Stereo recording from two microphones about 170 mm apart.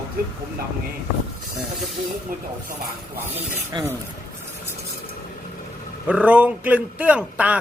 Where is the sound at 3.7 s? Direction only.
25° right (ahead or behind).